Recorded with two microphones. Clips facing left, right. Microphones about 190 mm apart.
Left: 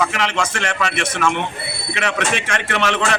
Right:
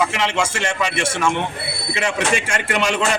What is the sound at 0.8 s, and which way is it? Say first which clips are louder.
Speech: left 1 dB; 10° right (ahead or behind).